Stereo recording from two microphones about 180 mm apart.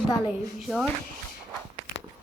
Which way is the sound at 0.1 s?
Centre (ahead or behind).